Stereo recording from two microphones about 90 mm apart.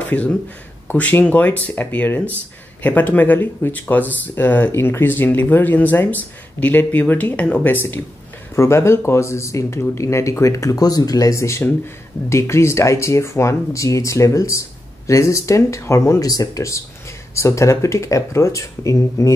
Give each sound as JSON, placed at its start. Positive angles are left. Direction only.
{"t": 0.0, "sound": "speech", "side_deg": 15}